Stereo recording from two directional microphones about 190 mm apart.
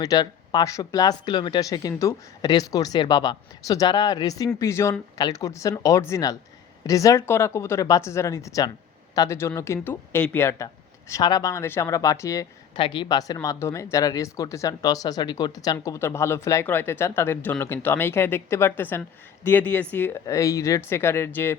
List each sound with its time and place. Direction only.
0.0 s speech: 20° left (ahead or behind)